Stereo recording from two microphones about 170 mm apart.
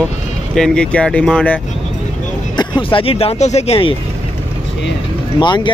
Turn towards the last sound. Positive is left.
turn(degrees=25)  # may be behind; listen again after turning